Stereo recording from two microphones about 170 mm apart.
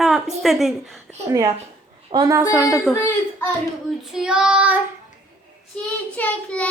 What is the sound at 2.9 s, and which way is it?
Child singing, 15° left (ahead or behind).